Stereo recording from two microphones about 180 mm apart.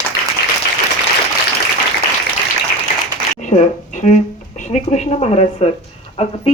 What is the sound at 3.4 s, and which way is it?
A woman's voice, 40° left (ahead or behind).